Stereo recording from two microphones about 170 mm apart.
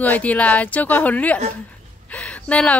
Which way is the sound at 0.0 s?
10° left (ahead or behind).